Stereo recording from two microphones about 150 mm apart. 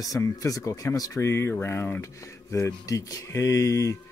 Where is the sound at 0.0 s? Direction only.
20° left (ahead or behind).